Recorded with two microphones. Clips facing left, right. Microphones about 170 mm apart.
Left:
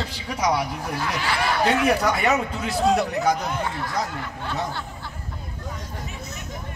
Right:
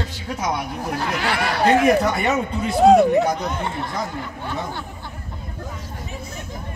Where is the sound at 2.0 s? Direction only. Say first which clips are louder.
Right 1 dB; 75° left (ahead or behind).